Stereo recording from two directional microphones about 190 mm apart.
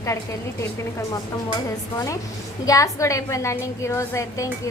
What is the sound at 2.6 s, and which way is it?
A woman's voice, 15° left (ahead or behind).